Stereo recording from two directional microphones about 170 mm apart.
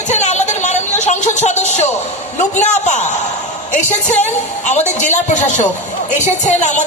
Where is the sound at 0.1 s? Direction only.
40° left (ahead or behind).